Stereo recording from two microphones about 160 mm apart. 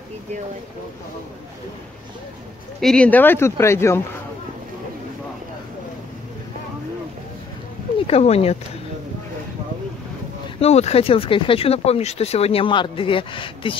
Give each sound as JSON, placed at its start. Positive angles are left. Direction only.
{"t": 2.8, "sound": "speech", "side_deg": 5}
{"t": 8.1, "sound": "speech", "side_deg": 40}
{"t": 10.6, "sound": "speech", "side_deg": 40}